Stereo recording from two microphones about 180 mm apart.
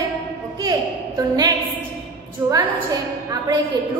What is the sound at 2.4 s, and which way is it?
Speech, 15° right (ahead or behind).